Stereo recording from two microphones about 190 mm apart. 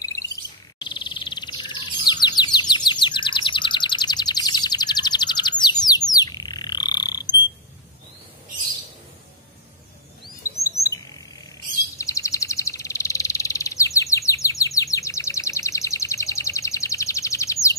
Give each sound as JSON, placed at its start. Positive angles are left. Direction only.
{"t": 0.0, "sound": "bird", "side_deg": 15}
{"t": 10.6, "sound": "chirp", "side_deg": 15}
{"t": 12.0, "sound": "bird", "side_deg": 15}